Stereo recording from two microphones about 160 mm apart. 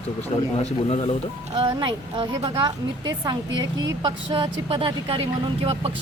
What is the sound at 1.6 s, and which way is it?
A woman's voice, 30° right (ahead or behind).